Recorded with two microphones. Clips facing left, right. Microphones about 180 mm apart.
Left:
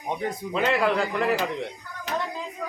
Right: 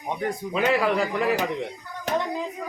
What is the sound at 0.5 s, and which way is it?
Speech, 5° right (ahead or behind).